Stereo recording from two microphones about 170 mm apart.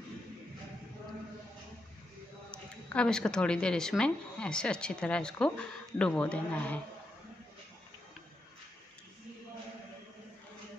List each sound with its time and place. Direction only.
2.5 s speech: 5° left (ahead or behind)